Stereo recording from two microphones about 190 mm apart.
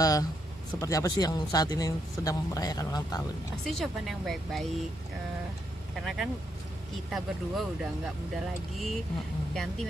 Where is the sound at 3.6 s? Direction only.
Centre (ahead or behind).